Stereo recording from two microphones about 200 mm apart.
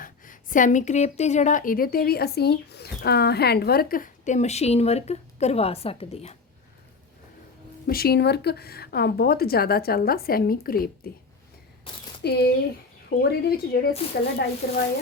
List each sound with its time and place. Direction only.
0.0 s a woman's voice: 40° left (ahead or behind)
7.9 s speech: 50° left (ahead or behind)
11.9 s speech: 25° left (ahead or behind)
12.2 s speech: 55° left (ahead or behind)